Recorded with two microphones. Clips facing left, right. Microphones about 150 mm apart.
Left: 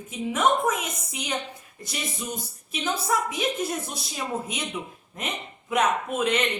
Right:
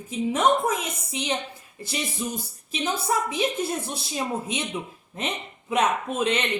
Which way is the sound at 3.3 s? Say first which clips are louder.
Right 2 dB; 30° right (ahead or behind).